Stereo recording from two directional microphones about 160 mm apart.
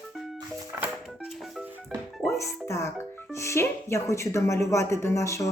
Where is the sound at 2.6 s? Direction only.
15° left (ahead or behind).